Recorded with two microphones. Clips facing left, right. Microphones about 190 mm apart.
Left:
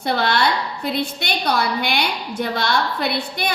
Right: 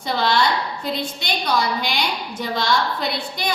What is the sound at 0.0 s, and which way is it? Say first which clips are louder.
A woman's voice: left 1 dB; 60° left (ahead or behind).